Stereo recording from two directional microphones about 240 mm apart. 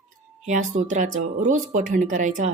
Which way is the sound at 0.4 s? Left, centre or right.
Right.